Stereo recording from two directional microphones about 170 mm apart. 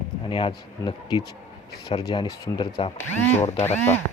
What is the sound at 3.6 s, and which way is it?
Speech, 10° left (ahead or behind).